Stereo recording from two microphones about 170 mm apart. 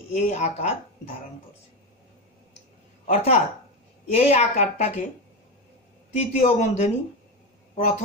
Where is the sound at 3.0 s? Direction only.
45° left (ahead or behind).